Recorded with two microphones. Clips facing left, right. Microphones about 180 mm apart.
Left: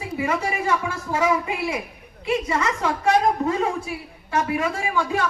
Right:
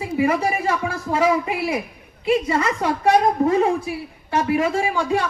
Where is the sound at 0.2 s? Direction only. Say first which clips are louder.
Right 5 dB; 30° right (ahead or behind).